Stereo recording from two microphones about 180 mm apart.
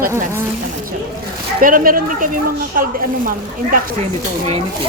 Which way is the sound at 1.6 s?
50° right (ahead or behind).